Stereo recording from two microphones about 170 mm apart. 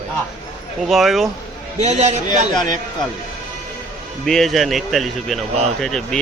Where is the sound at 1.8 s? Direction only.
40° right (ahead or behind).